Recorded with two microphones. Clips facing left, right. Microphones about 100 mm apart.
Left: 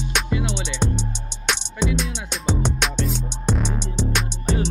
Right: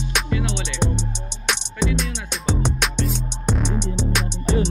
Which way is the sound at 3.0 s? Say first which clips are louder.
Even; centre (ahead or behind).